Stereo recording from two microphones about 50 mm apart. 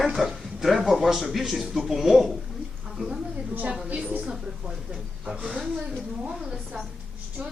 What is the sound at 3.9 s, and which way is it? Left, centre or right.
A woman's voice, right.